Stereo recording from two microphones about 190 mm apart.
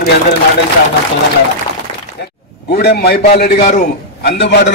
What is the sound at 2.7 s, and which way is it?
A man's voice, 55° left (ahead or behind).